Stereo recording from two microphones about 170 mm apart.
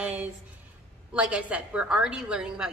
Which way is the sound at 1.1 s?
10° right (ahead or behind).